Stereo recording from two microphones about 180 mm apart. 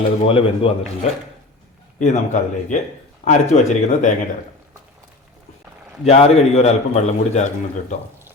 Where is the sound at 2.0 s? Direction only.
40° left (ahead or behind).